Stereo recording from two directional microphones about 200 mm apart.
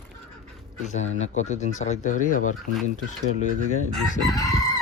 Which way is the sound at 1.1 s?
35° left (ahead or behind).